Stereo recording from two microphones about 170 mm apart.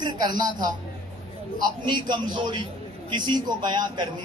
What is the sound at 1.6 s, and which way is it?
A man's voice, 25° right (ahead or behind).